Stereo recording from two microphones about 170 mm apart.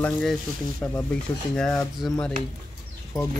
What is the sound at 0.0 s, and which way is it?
Speech, 5° left (ahead or behind).